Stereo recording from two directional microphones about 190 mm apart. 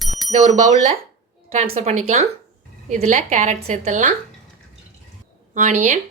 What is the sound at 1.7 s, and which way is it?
A woman's voice, 35° right (ahead or behind).